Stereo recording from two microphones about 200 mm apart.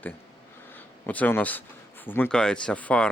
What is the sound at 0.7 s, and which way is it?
Speech, 10° left (ahead or behind).